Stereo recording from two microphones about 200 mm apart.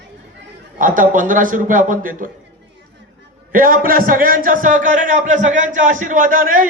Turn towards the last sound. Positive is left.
turn(degrees=-45)  # may be behind; listen again after turning